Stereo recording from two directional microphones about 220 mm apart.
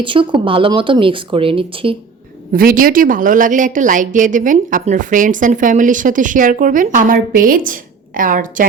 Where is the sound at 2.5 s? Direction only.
40° right (ahead or behind).